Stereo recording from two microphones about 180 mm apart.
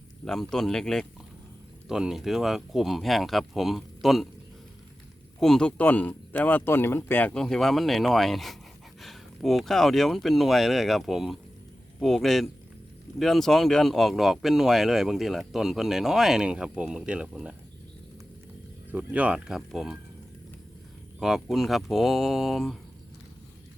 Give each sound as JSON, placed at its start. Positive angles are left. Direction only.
{"t": 0.3, "sound": "speech", "side_deg": 0}
{"t": 5.4, "sound": "speech", "side_deg": 5}
{"t": 18.9, "sound": "speech", "side_deg": -10}
{"t": 21.2, "sound": "speech", "side_deg": 0}